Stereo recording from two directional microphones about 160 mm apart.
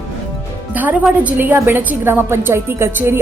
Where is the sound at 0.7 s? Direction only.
10° right (ahead or behind).